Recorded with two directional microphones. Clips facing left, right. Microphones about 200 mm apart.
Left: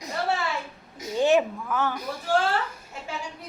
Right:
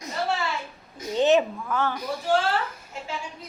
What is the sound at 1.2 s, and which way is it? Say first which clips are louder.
Speech: right 1 dB; 10° left (ahead or behind).